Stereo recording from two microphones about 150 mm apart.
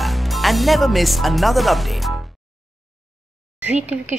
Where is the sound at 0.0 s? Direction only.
Centre (ahead or behind).